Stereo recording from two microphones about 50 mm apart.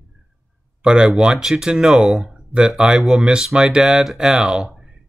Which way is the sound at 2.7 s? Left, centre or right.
Centre.